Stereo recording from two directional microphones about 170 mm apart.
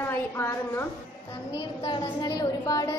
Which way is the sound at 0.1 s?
15° left (ahead or behind).